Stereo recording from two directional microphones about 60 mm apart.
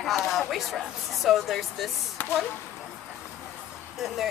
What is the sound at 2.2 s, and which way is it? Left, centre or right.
Speech, left.